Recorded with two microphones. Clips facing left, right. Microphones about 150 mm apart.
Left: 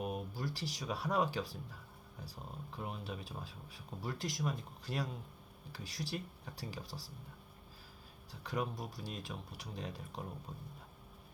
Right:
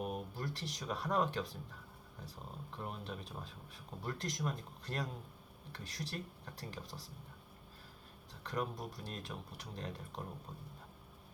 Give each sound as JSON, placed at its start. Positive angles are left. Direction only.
{"t": 0.0, "sound": "speech", "side_deg": 0}
{"t": 8.3, "sound": "speech", "side_deg": 0}